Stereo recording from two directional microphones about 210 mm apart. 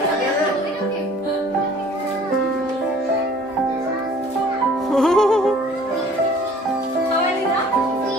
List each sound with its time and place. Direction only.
4.9 s music: centre (ahead or behind)